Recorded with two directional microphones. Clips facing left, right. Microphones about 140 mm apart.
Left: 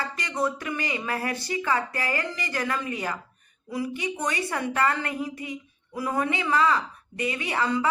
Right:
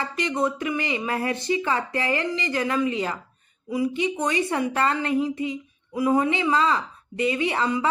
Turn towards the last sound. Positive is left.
turn(degrees=-20)  # may be behind; listen again after turning